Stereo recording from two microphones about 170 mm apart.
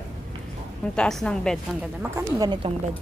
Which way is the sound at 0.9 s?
5° left (ahead or behind).